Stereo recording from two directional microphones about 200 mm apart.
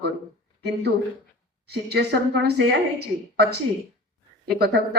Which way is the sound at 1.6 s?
55° right (ahead or behind).